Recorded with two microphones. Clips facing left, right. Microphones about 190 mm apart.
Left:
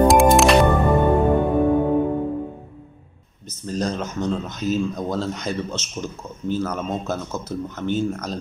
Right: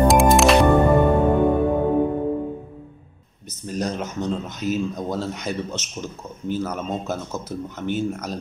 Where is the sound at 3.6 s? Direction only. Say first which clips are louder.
Left 1 dB; 15° right (ahead or behind).